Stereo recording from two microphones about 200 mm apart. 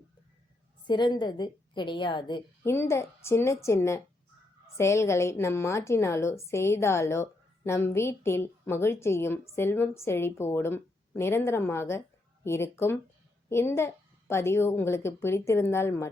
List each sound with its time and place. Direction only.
0.9 s a woman's voice: 20° left (ahead or behind)